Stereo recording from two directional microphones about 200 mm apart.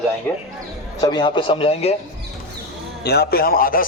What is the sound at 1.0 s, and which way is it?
Speech, 20° left (ahead or behind).